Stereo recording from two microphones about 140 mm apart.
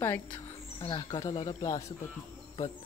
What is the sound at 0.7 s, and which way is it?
Speech, 35° left (ahead or behind).